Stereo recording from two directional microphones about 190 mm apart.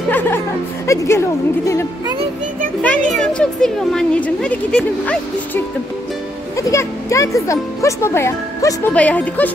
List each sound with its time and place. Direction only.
0.8 s speech: 15° left (ahead or behind)
2.8 s speech: 5° left (ahead or behind)
6.5 s speech: 15° left (ahead or behind)